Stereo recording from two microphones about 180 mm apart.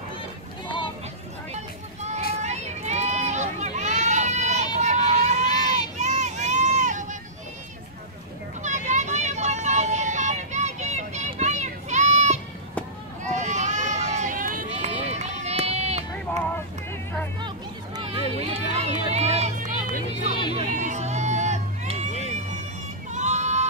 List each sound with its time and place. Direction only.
1.5 s vehicle: 40° right (ahead or behind)
2.4 s a sound: 40° right (ahead or behind)
5.1 s run: 40° right (ahead or behind)
5.5 s run: 25° left (ahead or behind)
5.9 s a sound: 40° right (ahead or behind)
8.6 s vehicle: 40° right (ahead or behind)
13.2 s run: 40° right (ahead or behind)
17.9 s run: 35° right (ahead or behind)
20.5 s music: 40° right (ahead or behind)
23.1 s a sound: 40° right (ahead or behind)